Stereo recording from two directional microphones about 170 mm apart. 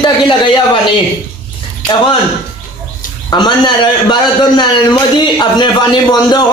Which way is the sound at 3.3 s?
25° left (ahead or behind).